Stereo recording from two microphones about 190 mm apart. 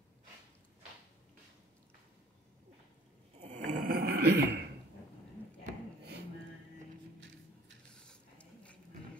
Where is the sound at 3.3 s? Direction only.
35° right (ahead or behind).